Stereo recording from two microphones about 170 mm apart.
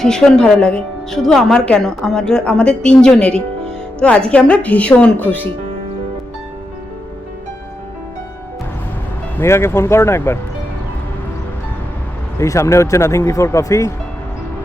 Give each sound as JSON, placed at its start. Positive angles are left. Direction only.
{"t": 0.0, "sound": "speech", "side_deg": 5}
{"t": 9.4, "sound": "speech", "side_deg": 15}
{"t": 12.4, "sound": "speech", "side_deg": 15}